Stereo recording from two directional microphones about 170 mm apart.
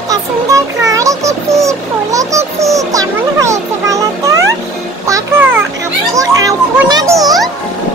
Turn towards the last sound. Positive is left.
turn(degrees=-20)  # may be behind; listen again after turning